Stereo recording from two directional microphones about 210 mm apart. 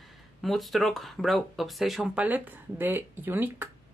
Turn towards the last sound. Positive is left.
turn(degrees=-10)  # may be behind; listen again after turning